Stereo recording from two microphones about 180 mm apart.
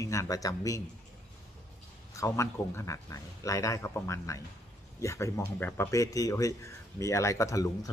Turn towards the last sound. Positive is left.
turn(degrees=20)  # may be behind; listen again after turning